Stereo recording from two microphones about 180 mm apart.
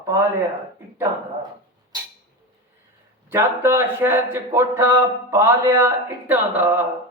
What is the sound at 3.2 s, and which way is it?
A man's voice, 10° right (ahead or behind).